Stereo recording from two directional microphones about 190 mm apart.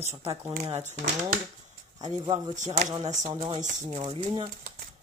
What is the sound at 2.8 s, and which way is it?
Speech, 40° right (ahead or behind).